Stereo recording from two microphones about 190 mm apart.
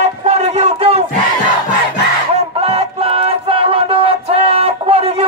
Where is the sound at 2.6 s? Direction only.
30° right (ahead or behind).